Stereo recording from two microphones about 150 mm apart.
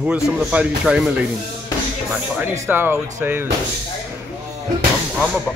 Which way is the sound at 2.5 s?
15° right (ahead or behind).